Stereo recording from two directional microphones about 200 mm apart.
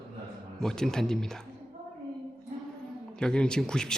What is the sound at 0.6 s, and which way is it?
Speech, centre (ahead or behind).